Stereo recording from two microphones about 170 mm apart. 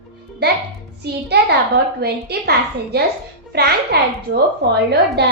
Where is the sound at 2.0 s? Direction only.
70° right (ahead or behind).